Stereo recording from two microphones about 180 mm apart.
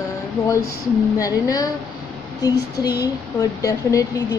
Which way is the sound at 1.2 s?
20° left (ahead or behind).